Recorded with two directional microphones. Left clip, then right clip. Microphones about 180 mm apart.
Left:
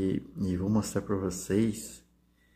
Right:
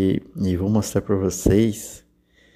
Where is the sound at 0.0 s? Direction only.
40° right (ahead or behind).